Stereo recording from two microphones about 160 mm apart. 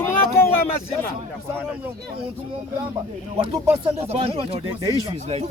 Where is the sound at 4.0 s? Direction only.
40° right (ahead or behind).